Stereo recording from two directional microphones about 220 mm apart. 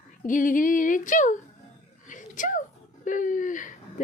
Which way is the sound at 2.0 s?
35° left (ahead or behind).